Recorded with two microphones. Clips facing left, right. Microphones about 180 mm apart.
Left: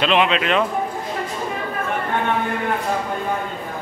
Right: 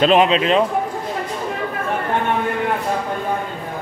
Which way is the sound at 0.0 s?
40° right (ahead or behind).